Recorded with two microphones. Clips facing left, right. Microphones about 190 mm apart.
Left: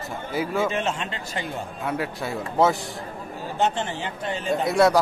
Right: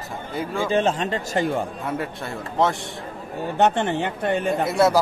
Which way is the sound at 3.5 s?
60° right (ahead or behind).